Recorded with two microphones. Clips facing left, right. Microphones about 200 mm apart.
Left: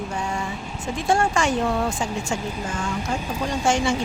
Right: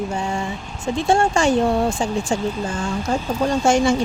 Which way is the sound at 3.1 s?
35° right (ahead or behind).